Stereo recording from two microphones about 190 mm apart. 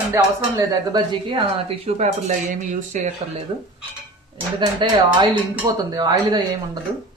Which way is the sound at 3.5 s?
25° right (ahead or behind).